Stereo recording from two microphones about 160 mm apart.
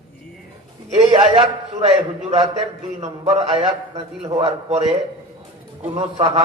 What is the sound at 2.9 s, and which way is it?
A man's voice, 40° right (ahead or behind).